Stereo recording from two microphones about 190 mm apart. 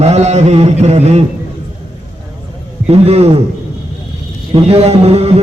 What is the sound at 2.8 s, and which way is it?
Speech, 35° right (ahead or behind).